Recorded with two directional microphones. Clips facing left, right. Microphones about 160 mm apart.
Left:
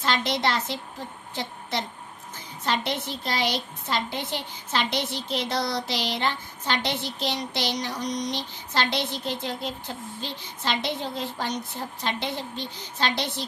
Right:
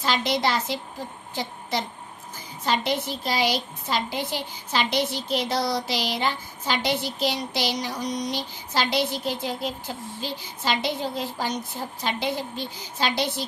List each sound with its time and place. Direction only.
0.0 s a woman's voice: centre (ahead or behind)